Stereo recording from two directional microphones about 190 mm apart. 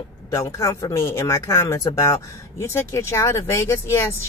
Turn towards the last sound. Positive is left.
turn(degrees=15)  # may be behind; listen again after turning